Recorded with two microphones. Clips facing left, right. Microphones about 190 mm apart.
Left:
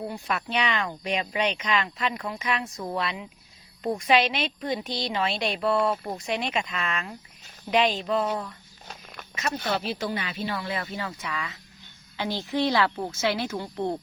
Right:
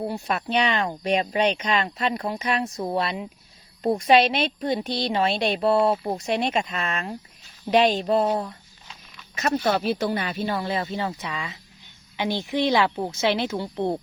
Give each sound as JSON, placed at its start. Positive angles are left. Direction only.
{"t": 0.0, "sound": "speech", "side_deg": -30}
{"t": 5.5, "sound": "a woman's voice", "side_deg": -25}
{"t": 10.7, "sound": "a woman's voice", "side_deg": -25}